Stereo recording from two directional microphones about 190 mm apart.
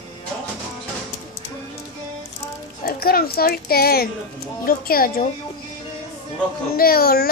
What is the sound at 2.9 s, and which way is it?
A child's voice, 50° left (ahead or behind).